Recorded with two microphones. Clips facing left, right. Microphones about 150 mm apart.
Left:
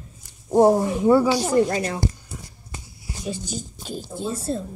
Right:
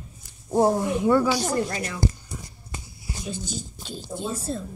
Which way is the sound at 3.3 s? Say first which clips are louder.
Left 4 dB; 10° left (ahead or behind).